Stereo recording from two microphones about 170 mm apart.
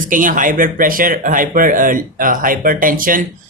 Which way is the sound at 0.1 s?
50° right (ahead or behind).